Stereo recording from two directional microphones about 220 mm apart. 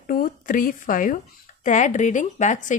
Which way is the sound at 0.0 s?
40° left (ahead or behind).